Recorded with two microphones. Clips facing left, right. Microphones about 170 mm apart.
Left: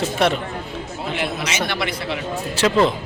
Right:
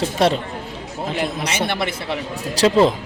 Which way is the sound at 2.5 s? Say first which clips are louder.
Right 3 dB; 30° right (ahead or behind).